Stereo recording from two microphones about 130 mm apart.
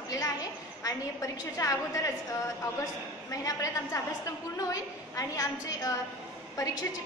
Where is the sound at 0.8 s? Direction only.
25° left (ahead or behind).